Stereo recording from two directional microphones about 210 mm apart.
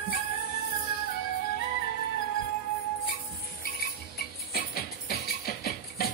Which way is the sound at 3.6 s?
45° left (ahead or behind).